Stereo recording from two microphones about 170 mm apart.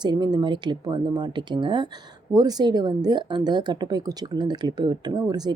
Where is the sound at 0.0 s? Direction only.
25° right (ahead or behind).